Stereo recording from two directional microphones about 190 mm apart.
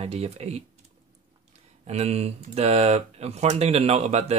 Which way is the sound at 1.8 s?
35° right (ahead or behind).